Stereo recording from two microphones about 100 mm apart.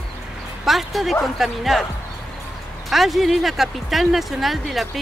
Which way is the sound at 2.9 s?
Centre (ahead or behind).